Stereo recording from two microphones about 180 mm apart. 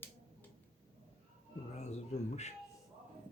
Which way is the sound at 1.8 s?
40° left (ahead or behind).